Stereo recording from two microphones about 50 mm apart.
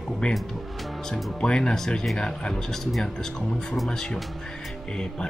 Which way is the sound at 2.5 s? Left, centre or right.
Centre.